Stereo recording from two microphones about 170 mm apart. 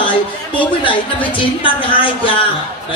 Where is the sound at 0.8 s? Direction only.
30° left (ahead or behind).